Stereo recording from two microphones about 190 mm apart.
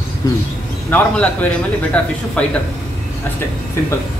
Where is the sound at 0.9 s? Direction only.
10° left (ahead or behind).